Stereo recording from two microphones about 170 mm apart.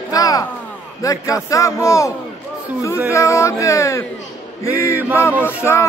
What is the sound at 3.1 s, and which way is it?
Speech, 15° left (ahead or behind).